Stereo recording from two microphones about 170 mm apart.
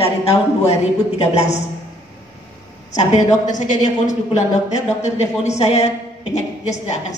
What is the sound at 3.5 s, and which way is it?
A woman's voice, 45° left (ahead or behind).